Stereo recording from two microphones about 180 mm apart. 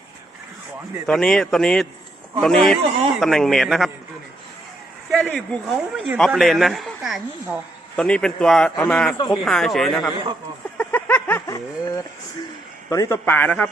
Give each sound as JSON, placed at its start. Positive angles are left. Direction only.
{"t": 1.0, "sound": "a man's voice", "side_deg": 5}
{"t": 5.1, "sound": "a man's voice", "side_deg": 5}
{"t": 9.1, "sound": "speech", "side_deg": 25}
{"t": 9.4, "sound": "a man's voice", "side_deg": 0}
{"t": 10.8, "sound": "a sound", "side_deg": 10}
{"t": 12.9, "sound": "a man's voice", "side_deg": 15}